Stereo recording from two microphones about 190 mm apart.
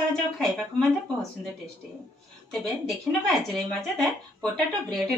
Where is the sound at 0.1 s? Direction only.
5° left (ahead or behind).